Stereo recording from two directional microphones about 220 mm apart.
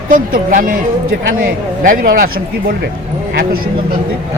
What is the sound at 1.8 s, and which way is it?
Speech, 40° right (ahead or behind).